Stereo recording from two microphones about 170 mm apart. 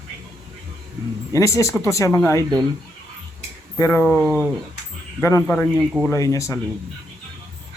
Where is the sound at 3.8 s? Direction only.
15° left (ahead or behind).